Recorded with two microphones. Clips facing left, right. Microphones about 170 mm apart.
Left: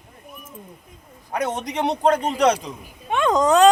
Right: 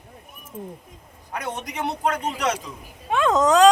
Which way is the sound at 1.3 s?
35° left (ahead or behind).